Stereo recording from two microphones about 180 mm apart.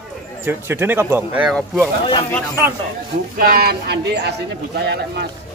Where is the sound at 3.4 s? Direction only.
55° right (ahead or behind).